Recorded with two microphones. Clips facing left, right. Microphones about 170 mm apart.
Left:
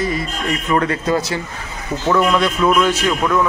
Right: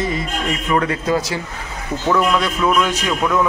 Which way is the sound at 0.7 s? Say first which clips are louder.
Left 1 dB; 10° right (ahead or behind).